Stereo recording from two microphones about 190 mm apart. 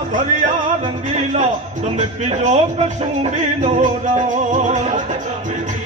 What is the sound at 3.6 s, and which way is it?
Music, 40° right (ahead or behind).